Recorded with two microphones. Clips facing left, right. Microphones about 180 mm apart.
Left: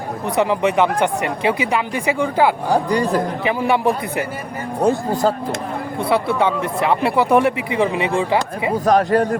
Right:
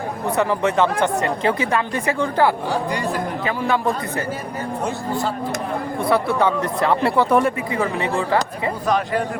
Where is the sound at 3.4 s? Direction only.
15° left (ahead or behind).